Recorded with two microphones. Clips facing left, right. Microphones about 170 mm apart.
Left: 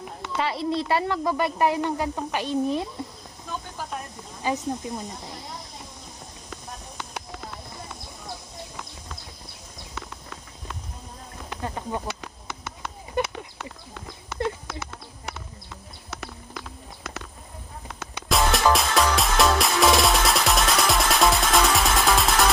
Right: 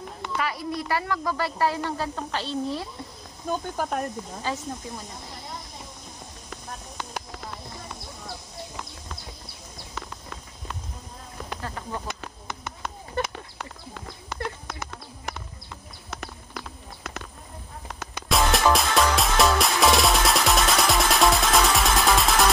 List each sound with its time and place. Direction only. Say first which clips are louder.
0.4 s speech: left 4 dB; 25° left (ahead or behind)
3.4 s speech: right 7 dB; 50° right (ahead or behind)
4.4 s speech: left 6 dB; 15° left (ahead or behind)
11.6 s speech: left 5 dB; 20° left (ahead or behind)
13.2 s a sound: left 3 dB; 15° left (ahead or behind)
18.3 s music: even; centre (ahead or behind)